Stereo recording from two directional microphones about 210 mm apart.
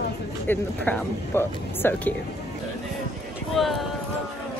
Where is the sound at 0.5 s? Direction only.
10° left (ahead or behind).